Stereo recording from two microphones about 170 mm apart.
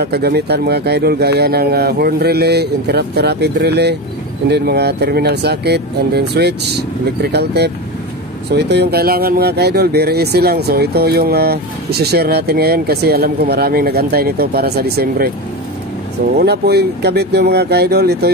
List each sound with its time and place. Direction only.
0.0 s speech: 70° right (ahead or behind)
16.3 s speech: 70° right (ahead or behind)